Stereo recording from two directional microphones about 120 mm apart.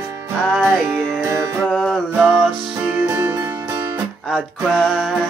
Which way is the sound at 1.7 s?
5° left (ahead or behind).